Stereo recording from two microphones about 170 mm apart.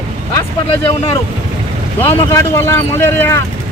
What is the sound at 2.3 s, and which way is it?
Speech, 15° left (ahead or behind).